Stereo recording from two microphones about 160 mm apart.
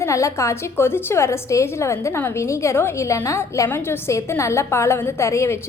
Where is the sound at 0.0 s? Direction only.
20° left (ahead or behind).